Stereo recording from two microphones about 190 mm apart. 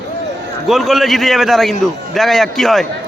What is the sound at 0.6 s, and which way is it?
A man's voice, centre (ahead or behind).